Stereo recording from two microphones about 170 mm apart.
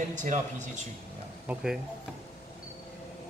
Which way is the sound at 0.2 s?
45° right (ahead or behind).